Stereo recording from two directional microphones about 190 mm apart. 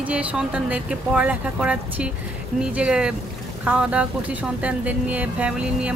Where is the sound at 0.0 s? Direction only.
5° right (ahead or behind).